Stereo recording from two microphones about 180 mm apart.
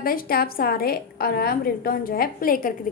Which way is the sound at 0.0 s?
55° left (ahead or behind).